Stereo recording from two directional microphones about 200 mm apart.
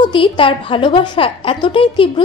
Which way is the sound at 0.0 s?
25° left (ahead or behind).